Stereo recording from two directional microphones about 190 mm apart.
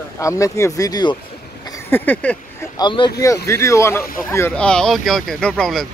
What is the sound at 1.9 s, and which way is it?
Speech, 10° left (ahead or behind).